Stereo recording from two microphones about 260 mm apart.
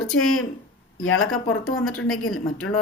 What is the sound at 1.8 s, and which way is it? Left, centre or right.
Speech, centre.